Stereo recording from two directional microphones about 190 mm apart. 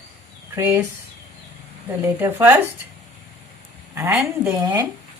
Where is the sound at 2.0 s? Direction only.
15° right (ahead or behind).